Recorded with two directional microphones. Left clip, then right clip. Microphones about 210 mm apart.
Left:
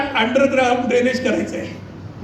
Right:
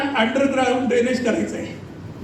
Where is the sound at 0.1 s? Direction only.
50° left (ahead or behind).